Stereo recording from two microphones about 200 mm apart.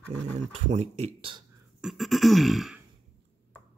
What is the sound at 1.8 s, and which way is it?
Throat clearing, centre (ahead or behind).